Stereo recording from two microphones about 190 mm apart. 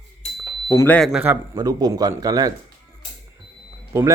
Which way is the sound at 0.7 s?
10° left (ahead or behind).